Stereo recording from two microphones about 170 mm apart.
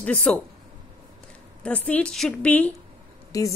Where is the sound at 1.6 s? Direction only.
5° left (ahead or behind).